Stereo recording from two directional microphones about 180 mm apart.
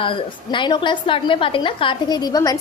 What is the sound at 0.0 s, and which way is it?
A woman's voice, 30° left (ahead or behind).